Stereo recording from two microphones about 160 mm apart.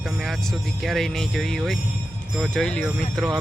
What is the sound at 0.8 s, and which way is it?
Speech, centre (ahead or behind).